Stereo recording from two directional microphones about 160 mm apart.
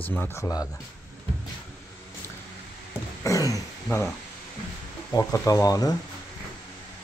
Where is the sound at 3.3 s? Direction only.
20° left (ahead or behind).